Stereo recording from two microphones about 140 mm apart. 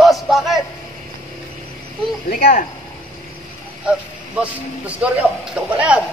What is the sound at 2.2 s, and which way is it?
Speech, 90° left.